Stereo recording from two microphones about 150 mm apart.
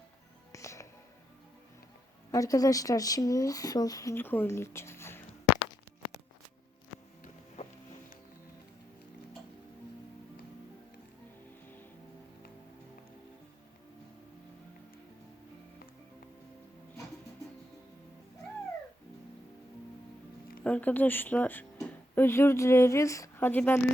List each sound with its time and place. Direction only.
0.5 s music: 20° left (ahead or behind)
2.3 s speech: 25° left (ahead or behind)
20.7 s speech: 10° left (ahead or behind)